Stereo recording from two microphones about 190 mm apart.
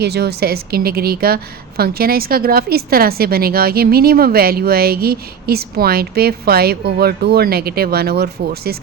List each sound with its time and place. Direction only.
0.0 s a woman's voice: 60° right (ahead or behind)